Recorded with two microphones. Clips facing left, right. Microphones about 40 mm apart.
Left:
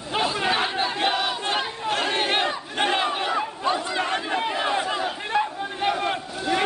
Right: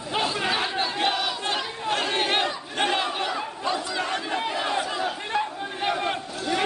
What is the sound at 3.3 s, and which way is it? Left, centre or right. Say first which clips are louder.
Chatter: left 3 dB; left.